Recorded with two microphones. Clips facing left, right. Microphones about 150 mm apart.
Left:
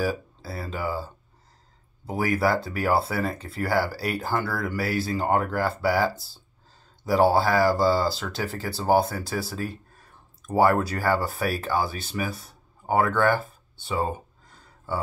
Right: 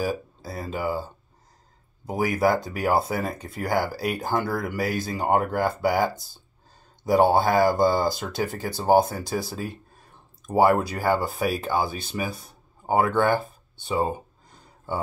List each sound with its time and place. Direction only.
0.0 s speech: 15° right (ahead or behind)